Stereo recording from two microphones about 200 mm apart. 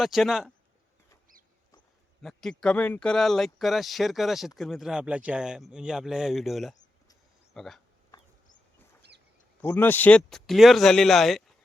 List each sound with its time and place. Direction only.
0.0 s speech: centre (ahead or behind)
2.2 s speech: centre (ahead or behind)
9.0 s a sound: 55° right (ahead or behind)
9.6 s speech: 10° left (ahead or behind)